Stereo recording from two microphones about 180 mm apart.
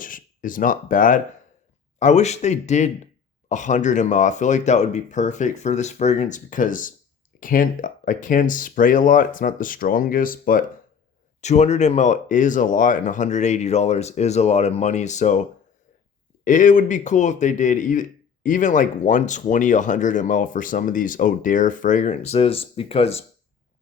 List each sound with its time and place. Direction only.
0.0 s speech: 50° left (ahead or behind)
11.3 s speech: 40° left (ahead or behind)